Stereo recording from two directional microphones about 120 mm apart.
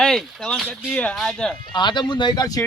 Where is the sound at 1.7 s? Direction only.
40° left (ahead or behind).